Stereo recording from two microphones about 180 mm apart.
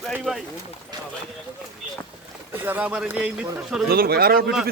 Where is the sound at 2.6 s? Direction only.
10° right (ahead or behind).